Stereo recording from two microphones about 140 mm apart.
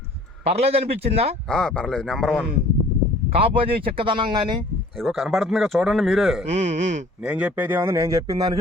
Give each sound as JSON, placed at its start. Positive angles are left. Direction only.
{"t": 0.4, "sound": "a man's voice", "side_deg": -45}
{"t": 1.5, "sound": "a man's voice", "side_deg": 5}
{"t": 3.3, "sound": "speech", "side_deg": -40}
{"t": 4.9, "sound": "speech", "side_deg": 0}
{"t": 6.5, "sound": "a man's voice", "side_deg": -50}
{"t": 7.2, "sound": "speech", "side_deg": -5}